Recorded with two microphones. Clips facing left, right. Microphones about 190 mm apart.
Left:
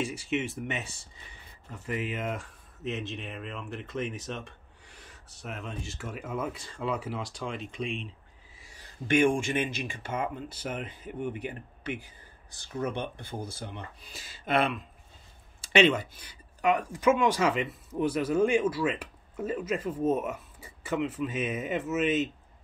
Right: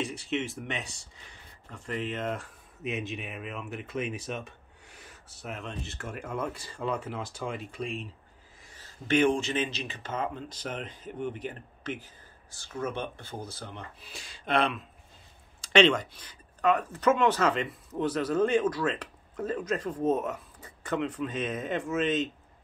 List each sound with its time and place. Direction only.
0.0 s speech: 10° left (ahead or behind)
2.8 s speech: 10° right (ahead or behind)
8.6 s speech: 10° left (ahead or behind)